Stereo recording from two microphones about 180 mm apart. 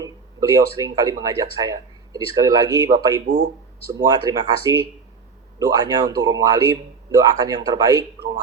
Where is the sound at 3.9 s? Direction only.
20° right (ahead or behind).